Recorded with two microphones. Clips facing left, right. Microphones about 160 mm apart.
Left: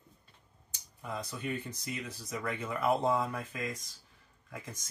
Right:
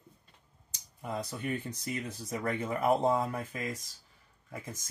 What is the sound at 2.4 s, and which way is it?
Speech, 55° right (ahead or behind).